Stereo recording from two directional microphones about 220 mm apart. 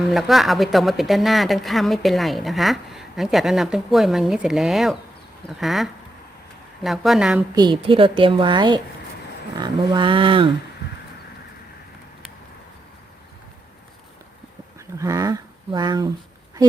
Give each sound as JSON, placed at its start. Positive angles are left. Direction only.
{"t": 0.1, "sound": "speech", "side_deg": 0}
{"t": 7.5, "sound": "a woman's voice", "side_deg": -20}
{"t": 14.9, "sound": "speech", "side_deg": -15}